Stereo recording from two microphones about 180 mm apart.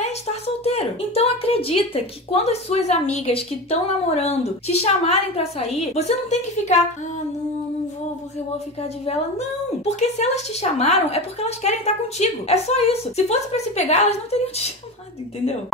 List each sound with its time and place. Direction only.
0.0 s a woman's voice: 35° left (ahead or behind)
9.8 s a woman's voice: 35° left (ahead or behind)